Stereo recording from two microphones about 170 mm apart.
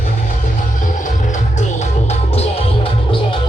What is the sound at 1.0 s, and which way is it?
Music, 45° left (ahead or behind).